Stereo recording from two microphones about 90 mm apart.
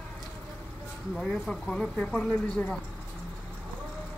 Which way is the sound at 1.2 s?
5° left (ahead or behind).